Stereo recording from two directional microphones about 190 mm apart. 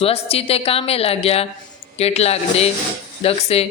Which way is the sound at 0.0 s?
30° left (ahead or behind).